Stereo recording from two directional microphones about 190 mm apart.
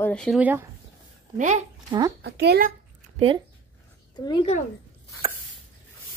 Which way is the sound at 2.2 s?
60° right (ahead or behind).